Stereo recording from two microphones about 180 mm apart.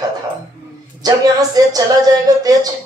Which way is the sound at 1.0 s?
20° right (ahead or behind).